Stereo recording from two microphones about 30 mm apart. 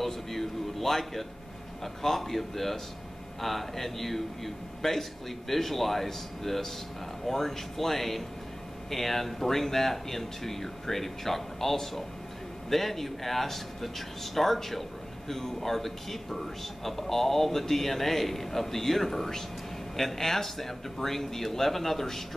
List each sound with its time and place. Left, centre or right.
0.0 s a man's voice: centre